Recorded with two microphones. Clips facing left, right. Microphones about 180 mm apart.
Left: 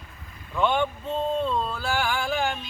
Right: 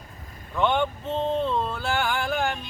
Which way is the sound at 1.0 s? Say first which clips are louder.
Right 1 dB; 20° right (ahead or behind).